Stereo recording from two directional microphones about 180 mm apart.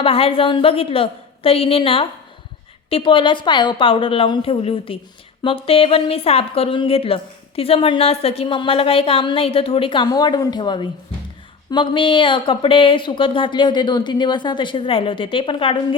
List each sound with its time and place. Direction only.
0.0 s a woman's voice: 30° left (ahead or behind)